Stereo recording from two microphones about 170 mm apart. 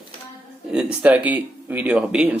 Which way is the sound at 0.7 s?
5° right (ahead or behind).